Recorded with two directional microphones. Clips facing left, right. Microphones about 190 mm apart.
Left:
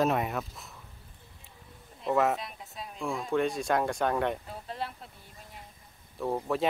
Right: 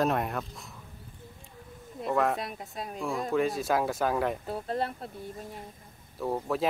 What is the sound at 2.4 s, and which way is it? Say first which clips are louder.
Speech: right 5 dB; 55° right (ahead or behind).